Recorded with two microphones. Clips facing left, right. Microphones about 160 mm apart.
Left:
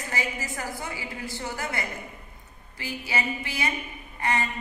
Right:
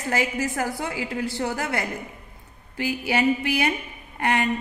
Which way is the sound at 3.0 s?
65° right (ahead or behind).